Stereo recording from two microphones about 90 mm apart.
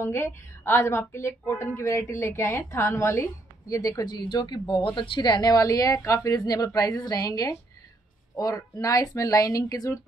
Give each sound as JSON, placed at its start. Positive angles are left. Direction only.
{"t": 0.0, "sound": "a woman's voice", "side_deg": 30}
{"t": 4.0, "sound": "a woman's voice", "side_deg": 50}